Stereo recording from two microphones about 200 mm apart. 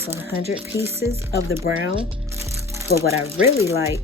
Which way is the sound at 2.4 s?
15° right (ahead or behind).